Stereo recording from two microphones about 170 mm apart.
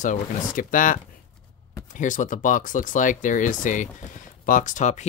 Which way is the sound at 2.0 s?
50° left (ahead or behind).